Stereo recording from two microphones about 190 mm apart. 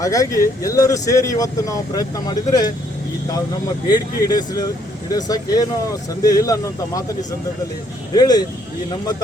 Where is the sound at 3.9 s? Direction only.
20° left (ahead or behind).